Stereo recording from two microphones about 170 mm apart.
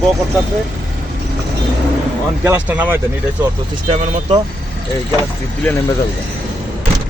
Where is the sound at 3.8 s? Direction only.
40° right (ahead or behind).